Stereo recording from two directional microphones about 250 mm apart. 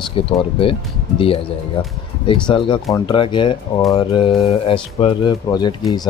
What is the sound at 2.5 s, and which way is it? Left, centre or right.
Speech, centre.